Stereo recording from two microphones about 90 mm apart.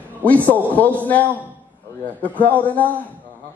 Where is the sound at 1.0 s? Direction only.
20° left (ahead or behind).